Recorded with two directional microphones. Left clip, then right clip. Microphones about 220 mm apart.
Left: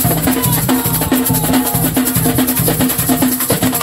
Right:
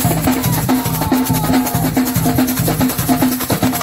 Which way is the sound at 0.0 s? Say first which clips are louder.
Left 1 dB; 15° left (ahead or behind).